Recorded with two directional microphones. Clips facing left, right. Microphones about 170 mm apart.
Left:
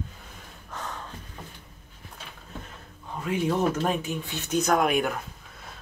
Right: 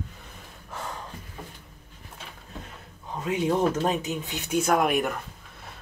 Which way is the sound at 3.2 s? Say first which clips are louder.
Right 1 dB; 20° right (ahead or behind).